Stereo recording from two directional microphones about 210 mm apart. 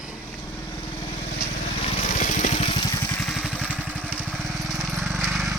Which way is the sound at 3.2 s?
Centre (ahead or behind).